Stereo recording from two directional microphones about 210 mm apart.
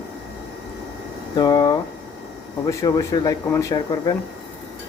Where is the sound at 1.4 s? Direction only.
20° left (ahead or behind).